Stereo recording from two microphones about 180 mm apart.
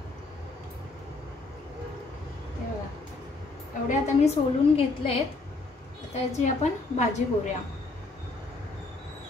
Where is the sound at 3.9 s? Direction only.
35° left (ahead or behind).